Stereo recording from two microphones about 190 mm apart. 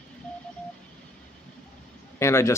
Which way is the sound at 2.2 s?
15° left (ahead or behind).